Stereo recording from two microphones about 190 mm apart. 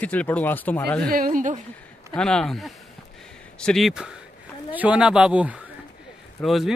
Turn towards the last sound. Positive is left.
turn(degrees=0)  # may be behind; listen again after turning